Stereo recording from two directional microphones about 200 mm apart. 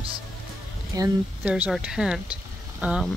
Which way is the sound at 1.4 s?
5° right (ahead or behind).